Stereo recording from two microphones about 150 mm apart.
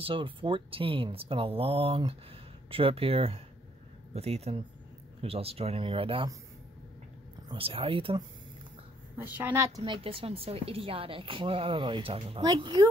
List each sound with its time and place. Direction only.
0.0 s speech: 35° right (ahead or behind)
7.4 s speech: 35° right (ahead or behind)
9.2 s a woman's voice: 15° right (ahead or behind)
9.8 s speech: 30° right (ahead or behind)